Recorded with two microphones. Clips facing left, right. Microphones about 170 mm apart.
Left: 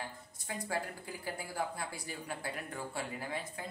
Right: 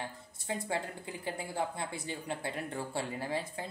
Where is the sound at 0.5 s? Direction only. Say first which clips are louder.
Right 3 dB; 25° right (ahead or behind).